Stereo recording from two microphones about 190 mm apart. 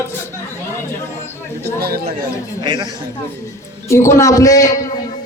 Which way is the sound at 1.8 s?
55° right (ahead or behind).